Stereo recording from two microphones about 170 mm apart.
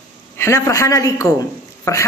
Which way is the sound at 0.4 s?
15° left (ahead or behind).